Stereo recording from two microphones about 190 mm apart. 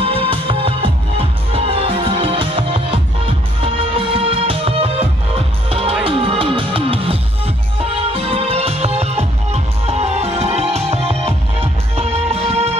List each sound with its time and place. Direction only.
0.0 s music: 30° right (ahead or behind)